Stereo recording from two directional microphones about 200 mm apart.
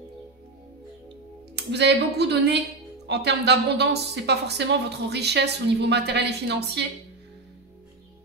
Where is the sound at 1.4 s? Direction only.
55° right (ahead or behind).